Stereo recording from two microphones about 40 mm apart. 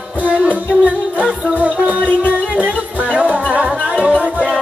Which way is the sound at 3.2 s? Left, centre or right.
Right.